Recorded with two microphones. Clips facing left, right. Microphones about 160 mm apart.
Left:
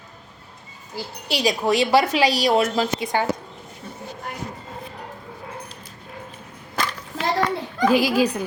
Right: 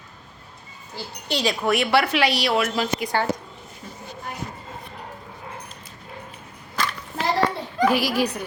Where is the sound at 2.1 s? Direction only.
40° left (ahead or behind).